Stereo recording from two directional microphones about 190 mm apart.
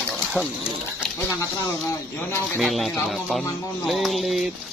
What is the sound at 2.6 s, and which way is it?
A man's voice, centre (ahead or behind).